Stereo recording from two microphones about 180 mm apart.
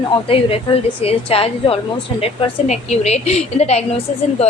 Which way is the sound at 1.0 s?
35° left (ahead or behind).